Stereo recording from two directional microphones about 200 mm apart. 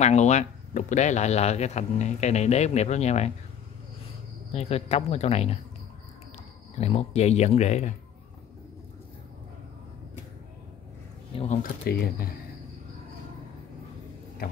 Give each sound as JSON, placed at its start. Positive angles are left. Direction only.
{"t": 0.0, "sound": "speech", "side_deg": 35}
{"t": 4.5, "sound": "speech", "side_deg": 30}
{"t": 6.8, "sound": "speech", "side_deg": 30}
{"t": 11.3, "sound": "speech", "side_deg": 40}